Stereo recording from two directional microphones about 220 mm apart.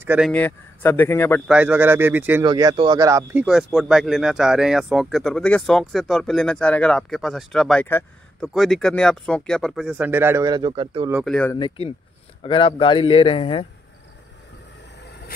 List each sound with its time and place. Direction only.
0.0 s a man's voice: 10° right (ahead or behind)
0.3 s speech: 10° left (ahead or behind)
1.5 s speech: 5° right (ahead or behind)
2.4 s speech: 20° right (ahead or behind)
3.4 s speech: centre (ahead or behind); by 11.1 s 25° right (ahead or behind)
11.2 s speech: 5° left (ahead or behind)
11.5 s a man's voice: 20° left (ahead or behind)